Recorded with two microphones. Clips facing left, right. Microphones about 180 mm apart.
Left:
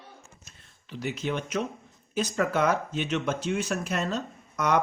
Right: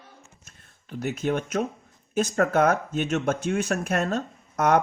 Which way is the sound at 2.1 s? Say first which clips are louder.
Right 4 dB; 50° right (ahead or behind).